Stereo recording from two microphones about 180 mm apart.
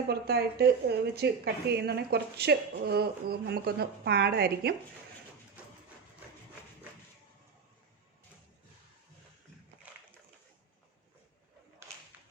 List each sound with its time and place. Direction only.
0.1 s a woman's voice: 60° right (ahead or behind)